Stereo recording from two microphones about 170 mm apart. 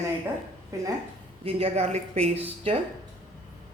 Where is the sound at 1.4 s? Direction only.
35° right (ahead or behind).